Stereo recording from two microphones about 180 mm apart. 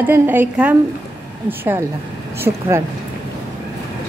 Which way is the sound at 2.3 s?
15° right (ahead or behind).